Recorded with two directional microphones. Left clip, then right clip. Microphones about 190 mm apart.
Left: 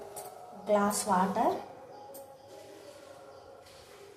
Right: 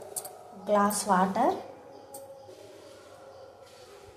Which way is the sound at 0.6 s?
10° right (ahead or behind).